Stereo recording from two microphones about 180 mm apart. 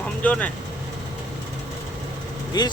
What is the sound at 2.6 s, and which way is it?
Speech, 25° left (ahead or behind).